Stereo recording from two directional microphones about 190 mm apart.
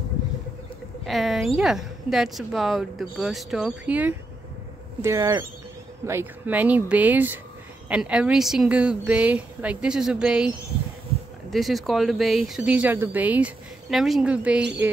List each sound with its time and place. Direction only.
1.0 s speech: centre (ahead or behind)
11.5 s speech: centre (ahead or behind)